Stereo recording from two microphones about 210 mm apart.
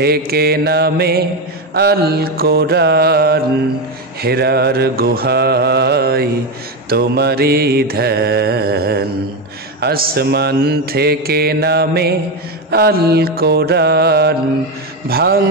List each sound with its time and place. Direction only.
0.0 s mantra: 50° right (ahead or behind)